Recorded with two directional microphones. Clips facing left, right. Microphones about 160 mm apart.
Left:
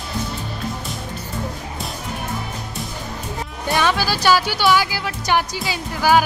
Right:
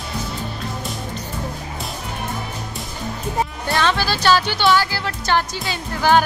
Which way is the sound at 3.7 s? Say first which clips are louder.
Left 1 dB; 10° left (ahead or behind).